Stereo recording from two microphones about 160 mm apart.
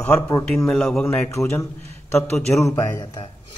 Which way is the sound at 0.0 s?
15° left (ahead or behind).